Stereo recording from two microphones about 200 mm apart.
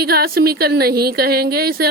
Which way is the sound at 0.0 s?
50° right (ahead or behind).